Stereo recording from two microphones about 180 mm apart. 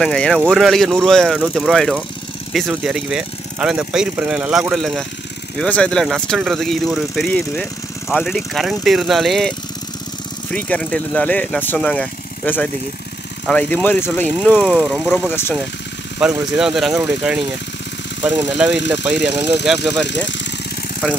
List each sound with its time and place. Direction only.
0.0 s speech: 5° left (ahead or behind)
10.5 s speech: 10° left (ahead or behind)
16.2 s speech: 5° right (ahead or behind)
18.5 s speech: 5° right (ahead or behind)
20.1 s speech: 80° left